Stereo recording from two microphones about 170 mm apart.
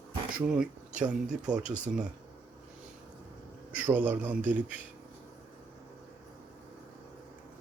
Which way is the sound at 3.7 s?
10° right (ahead or behind).